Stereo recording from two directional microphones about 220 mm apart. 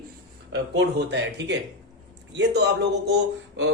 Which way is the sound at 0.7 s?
50° right (ahead or behind).